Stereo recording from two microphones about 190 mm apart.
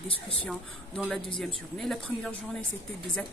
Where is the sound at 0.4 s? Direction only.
5° left (ahead or behind).